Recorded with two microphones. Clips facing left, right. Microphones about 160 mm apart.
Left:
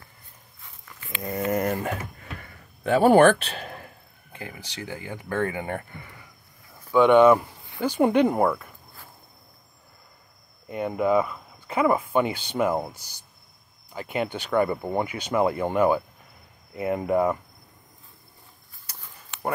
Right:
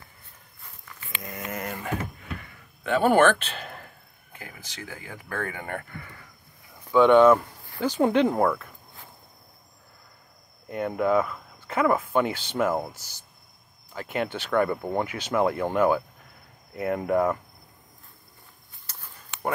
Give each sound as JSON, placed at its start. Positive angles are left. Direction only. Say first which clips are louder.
{"t": 1.2, "sound": "a sound", "louder": "left 9 dB", "side_deg": 35}
{"t": 4.3, "sound": "speech", "louder": "left 5 dB", "side_deg": 25}
{"t": 6.9, "sound": "speech", "louder": "even", "side_deg": 10}
{"t": 10.7, "sound": "speech", "louder": "left 1 dB", "side_deg": 5}
{"t": 13.9, "sound": "speech", "louder": "left 1 dB", "side_deg": 5}